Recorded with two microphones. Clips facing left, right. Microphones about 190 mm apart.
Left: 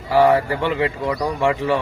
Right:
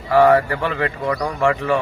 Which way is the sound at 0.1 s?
30° left (ahead or behind).